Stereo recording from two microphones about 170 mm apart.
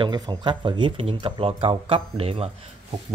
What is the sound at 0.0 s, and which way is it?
Speech, 25° right (ahead or behind).